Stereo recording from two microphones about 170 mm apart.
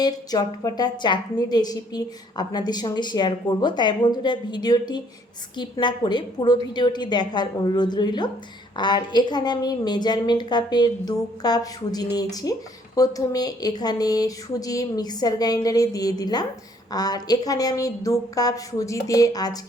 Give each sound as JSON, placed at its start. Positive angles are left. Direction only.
{"t": 0.0, "sound": "a woman's voice", "side_deg": 20}